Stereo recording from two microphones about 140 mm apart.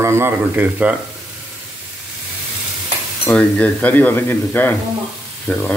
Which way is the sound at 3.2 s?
10° left (ahead or behind).